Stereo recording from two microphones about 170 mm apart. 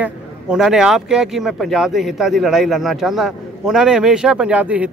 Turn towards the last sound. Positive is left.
turn(degrees=-10)  # may be behind; listen again after turning